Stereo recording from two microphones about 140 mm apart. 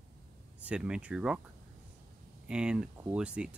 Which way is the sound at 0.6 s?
10° right (ahead or behind).